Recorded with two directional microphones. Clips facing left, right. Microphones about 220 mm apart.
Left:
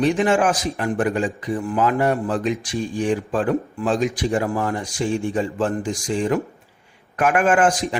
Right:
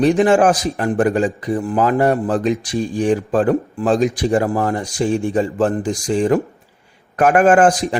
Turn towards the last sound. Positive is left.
turn(degrees=-35)  # may be behind; listen again after turning